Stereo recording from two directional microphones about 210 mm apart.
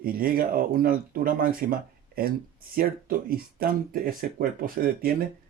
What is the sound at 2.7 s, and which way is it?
Speech, 45° right (ahead or behind).